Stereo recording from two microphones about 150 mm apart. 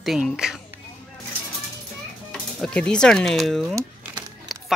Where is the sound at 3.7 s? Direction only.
20° right (ahead or behind).